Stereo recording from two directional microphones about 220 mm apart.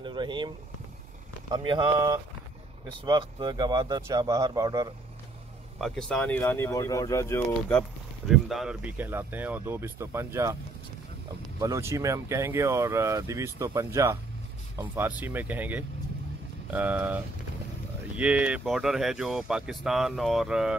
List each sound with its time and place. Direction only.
0.0 s speech: 20° right (ahead or behind)
1.5 s speech: 20° right (ahead or behind)
5.8 s speech: centre (ahead or behind)
8.3 s speech: centre (ahead or behind)
11.6 s speech: 15° right (ahead or behind)